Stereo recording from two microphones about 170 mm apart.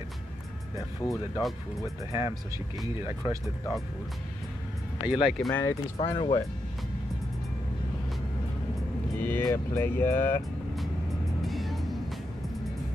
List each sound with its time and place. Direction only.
1.0 s speech: 20° left (ahead or behind)
2.1 s speech: 20° right (ahead or behind)
5.0 s speech: 5° right (ahead or behind)
5.5 s speech: 10° left (ahead or behind)
5.9 s speech: 30° left (ahead or behind)
9.2 s speech: 10° left (ahead or behind)
11.4 s music: centre (ahead or behind)